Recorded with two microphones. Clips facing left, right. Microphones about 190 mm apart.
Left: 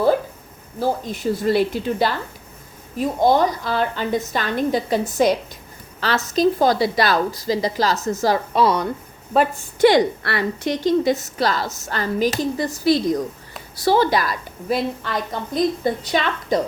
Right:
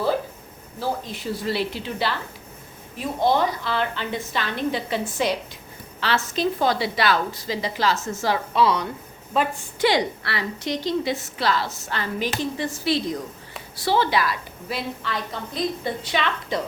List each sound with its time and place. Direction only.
0.8 s a woman's voice: 45° left (ahead or behind)